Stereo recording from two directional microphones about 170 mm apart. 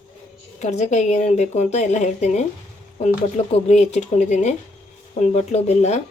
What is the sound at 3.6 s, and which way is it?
A woman's voice, 40° left (ahead or behind).